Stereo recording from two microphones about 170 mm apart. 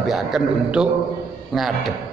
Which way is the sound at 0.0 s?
Centre (ahead or behind).